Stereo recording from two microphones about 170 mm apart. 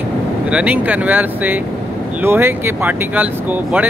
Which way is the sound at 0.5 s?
5° right (ahead or behind).